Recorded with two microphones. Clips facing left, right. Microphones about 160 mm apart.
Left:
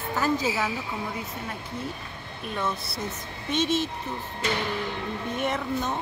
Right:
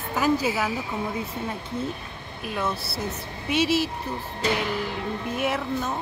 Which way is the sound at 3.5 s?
10° right (ahead or behind).